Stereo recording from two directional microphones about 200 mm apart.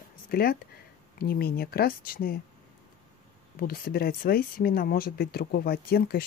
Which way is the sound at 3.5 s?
45° left (ahead or behind).